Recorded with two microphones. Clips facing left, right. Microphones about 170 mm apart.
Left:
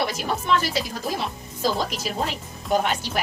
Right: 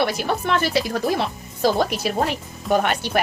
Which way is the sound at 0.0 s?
60° right (ahead or behind).